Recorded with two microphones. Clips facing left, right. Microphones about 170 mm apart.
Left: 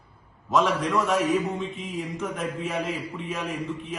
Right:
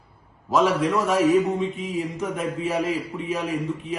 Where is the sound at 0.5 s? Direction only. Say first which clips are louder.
Right 3 dB; centre (ahead or behind).